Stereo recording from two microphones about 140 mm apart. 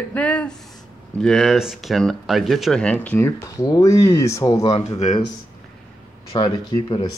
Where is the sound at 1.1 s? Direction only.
Centre (ahead or behind).